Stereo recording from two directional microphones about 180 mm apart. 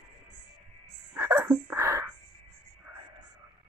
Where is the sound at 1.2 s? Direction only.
10° right (ahead or behind).